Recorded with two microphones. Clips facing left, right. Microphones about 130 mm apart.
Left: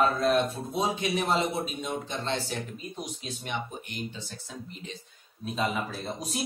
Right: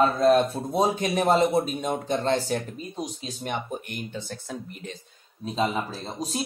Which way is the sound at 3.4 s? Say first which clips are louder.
Right 5 dB; 55° right (ahead or behind).